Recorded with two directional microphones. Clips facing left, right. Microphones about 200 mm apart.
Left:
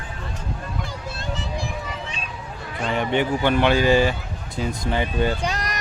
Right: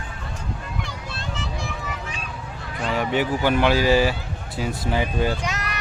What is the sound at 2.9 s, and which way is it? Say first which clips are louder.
Speech: left 1 dB; 5° right (ahead or behind).